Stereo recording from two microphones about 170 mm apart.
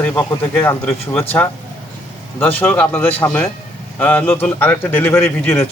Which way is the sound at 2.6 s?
10° left (ahead or behind).